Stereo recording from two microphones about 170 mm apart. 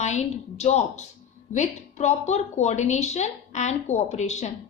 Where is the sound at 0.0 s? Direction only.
40° left (ahead or behind).